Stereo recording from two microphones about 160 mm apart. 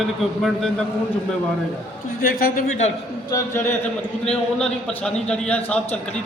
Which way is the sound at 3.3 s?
20° left (ahead or behind).